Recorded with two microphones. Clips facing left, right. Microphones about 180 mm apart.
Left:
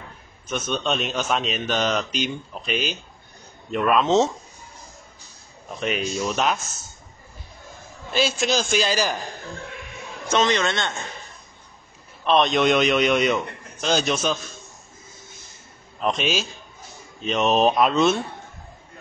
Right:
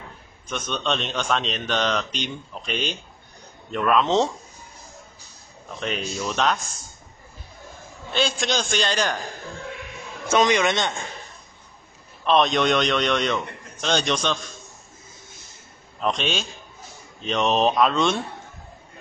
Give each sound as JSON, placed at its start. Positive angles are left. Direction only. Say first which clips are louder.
{"t": 0.5, "sound": "a man's voice", "louder": "left 2 dB", "side_deg": 5}
{"t": 5.8, "sound": "speech", "louder": "left 3 dB", "side_deg": 10}
{"t": 8.1, "sound": "a man's voice", "louder": "left 2 dB", "side_deg": 5}
{"t": 10.2, "sound": "a man's voice", "louder": "right 2 dB", "side_deg": -10}
{"t": 12.3, "sound": "a man's voice", "louder": "left 1 dB", "side_deg": 0}
{"t": 16.0, "sound": "a man's voice", "louder": "left 1 dB", "side_deg": 5}